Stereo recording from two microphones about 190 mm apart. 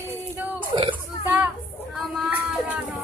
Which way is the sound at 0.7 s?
25° right (ahead or behind).